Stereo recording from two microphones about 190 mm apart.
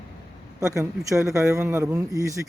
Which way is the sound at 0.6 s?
15° right (ahead or behind).